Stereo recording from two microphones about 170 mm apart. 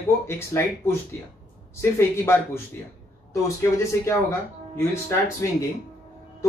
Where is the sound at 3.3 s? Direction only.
15° left (ahead or behind).